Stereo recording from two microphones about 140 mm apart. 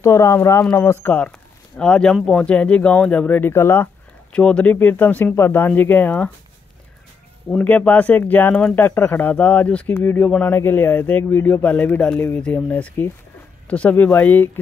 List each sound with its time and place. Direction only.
0.0 s speech: 20° left (ahead or behind)
1.0 s speech: 10° left (ahead or behind)
7.4 s speech: 10° left (ahead or behind)